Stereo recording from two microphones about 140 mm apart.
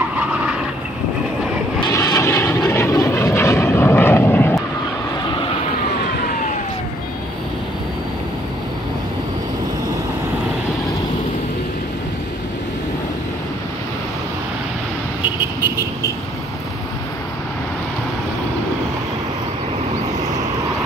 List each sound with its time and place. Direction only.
1.9 s vehicle: 20° left (ahead or behind)